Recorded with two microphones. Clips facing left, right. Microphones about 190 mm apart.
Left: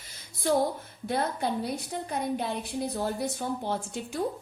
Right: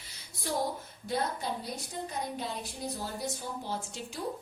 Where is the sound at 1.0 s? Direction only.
60° left (ahead or behind).